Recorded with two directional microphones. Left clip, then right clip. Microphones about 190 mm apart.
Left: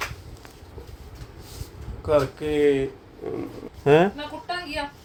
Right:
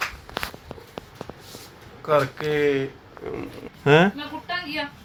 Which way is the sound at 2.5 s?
15° left (ahead or behind).